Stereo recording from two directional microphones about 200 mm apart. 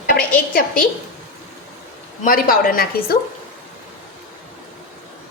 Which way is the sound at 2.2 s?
45° left (ahead or behind).